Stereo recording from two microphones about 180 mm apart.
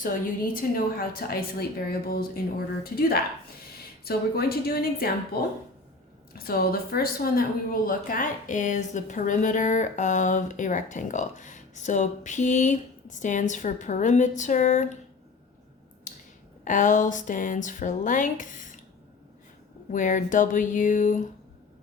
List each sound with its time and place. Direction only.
0.0 s a woman's voice: 50° left (ahead or behind)
4.0 s a woman's voice: 60° left (ahead or behind); by 14.9 s 45° left (ahead or behind)
16.6 s a woman's voice: 45° left (ahead or behind)
19.9 s a woman's voice: 45° left (ahead or behind)